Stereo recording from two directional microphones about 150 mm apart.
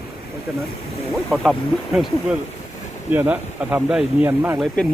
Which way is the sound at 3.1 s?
10° right (ahead or behind).